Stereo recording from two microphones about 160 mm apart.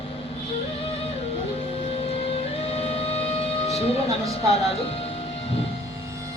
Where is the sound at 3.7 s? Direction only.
40° left (ahead or behind).